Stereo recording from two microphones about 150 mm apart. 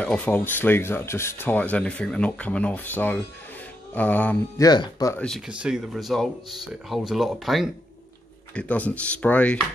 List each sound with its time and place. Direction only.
0.0 s speech: 10° left (ahead or behind)
4.6 s speech: 30° left (ahead or behind)
5.1 s speech: 5° left (ahead or behind)
5.5 s speech: 5° right (ahead or behind)